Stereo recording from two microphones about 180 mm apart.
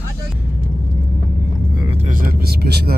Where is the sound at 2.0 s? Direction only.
50° right (ahead or behind).